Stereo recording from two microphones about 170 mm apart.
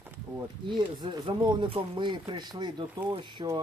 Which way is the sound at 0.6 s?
25° right (ahead or behind).